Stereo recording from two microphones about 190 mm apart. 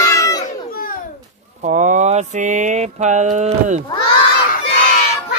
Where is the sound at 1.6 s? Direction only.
40° right (ahead or behind).